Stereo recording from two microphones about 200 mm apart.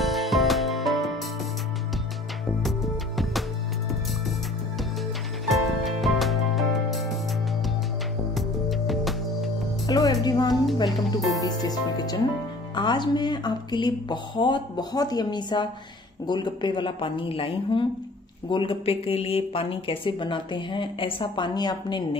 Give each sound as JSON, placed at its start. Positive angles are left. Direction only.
{"t": 0.0, "sound": "music", "side_deg": 0}
{"t": 5.5, "sound": "music", "side_deg": 0}
{"t": 8.4, "sound": "music", "side_deg": 0}
{"t": 9.8, "sound": "music", "side_deg": 20}
{"t": 10.2, "sound": "speech", "side_deg": 20}
{"t": 11.1, "sound": "music", "side_deg": 0}
{"t": 11.4, "sound": "speech", "side_deg": 20}